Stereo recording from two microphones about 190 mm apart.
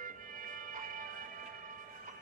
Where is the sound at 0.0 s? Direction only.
45° right (ahead or behind).